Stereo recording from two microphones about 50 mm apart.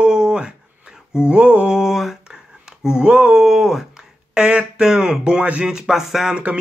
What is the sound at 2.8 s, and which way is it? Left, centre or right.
Music, centre.